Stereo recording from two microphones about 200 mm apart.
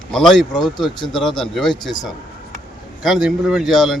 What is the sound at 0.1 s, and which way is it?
Speech, centre (ahead or behind).